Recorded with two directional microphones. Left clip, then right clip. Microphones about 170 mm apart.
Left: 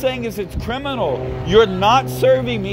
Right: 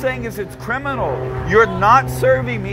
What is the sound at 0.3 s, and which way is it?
Speech, 45° left (ahead or behind).